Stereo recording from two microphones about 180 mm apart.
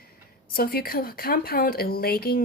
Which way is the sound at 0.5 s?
55° left (ahead or behind).